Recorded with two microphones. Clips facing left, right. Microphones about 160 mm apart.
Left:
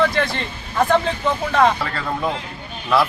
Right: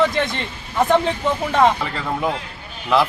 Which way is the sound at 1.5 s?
20° right (ahead or behind).